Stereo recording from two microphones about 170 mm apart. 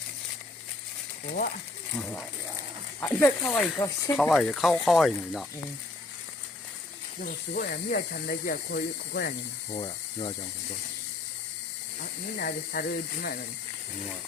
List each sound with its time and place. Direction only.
1.9 s speech: 10° left (ahead or behind)
4.2 s speech: centre (ahead or behind)
7.2 s speech: 60° left (ahead or behind)
9.7 s speech: 30° left (ahead or behind)
12.4 s speech: 65° left (ahead or behind)